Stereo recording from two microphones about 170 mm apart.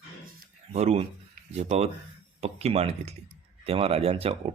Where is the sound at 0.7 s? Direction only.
40° right (ahead or behind).